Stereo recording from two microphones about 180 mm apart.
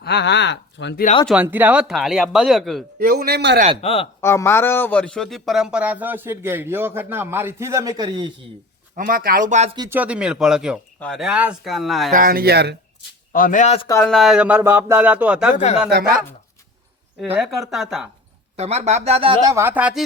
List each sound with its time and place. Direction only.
0.0 s speech: 70° left (ahead or behind)
1.3 s speech: 10° right (ahead or behind)
3.0 s speech: 55° right (ahead or behind)
3.8 s speech: 30° left (ahead or behind)
4.2 s a man's voice: 15° left (ahead or behind); by 8.3 s 25° right (ahead or behind)
9.0 s speech: 50° right (ahead or behind)
9.9 s speech: 5° right (ahead or behind)
12.1 s speech: 55° right (ahead or behind)
13.3 s a man's voice: 50° left (ahead or behind)
14.0 s a man's voice: centre (ahead or behind)
15.5 s speech: 40° left (ahead or behind)
17.2 s speech: 5° right (ahead or behind)
18.5 s speech: 35° right (ahead or behind)
19.5 s a man's voice: 10° right (ahead or behind)